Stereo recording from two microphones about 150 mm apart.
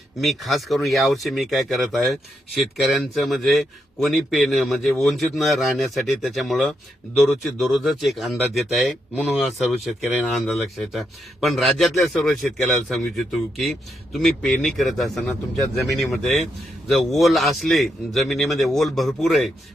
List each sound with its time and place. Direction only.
0.2 s a man's voice: centre (ahead or behind)